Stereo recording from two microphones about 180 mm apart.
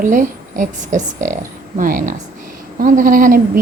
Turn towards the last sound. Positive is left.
turn(degrees=-50)  # may be behind; listen again after turning